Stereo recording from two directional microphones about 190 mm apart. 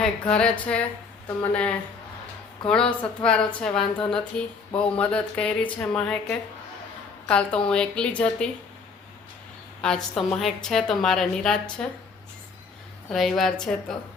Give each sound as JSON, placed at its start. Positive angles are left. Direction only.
{"t": 0.0, "sound": "a woman's voice", "side_deg": 5}
{"t": 2.8, "sound": "a woman's voice", "side_deg": 30}
{"t": 3.2, "sound": "a woman's voice", "side_deg": 5}
{"t": 9.8, "sound": "a woman's voice", "side_deg": 0}
{"t": 13.1, "sound": "a woman's voice", "side_deg": 0}